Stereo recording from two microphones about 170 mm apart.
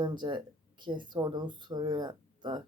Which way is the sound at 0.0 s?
25° right (ahead or behind).